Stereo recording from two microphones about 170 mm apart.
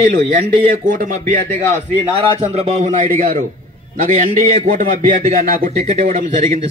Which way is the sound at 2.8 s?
50° right (ahead or behind).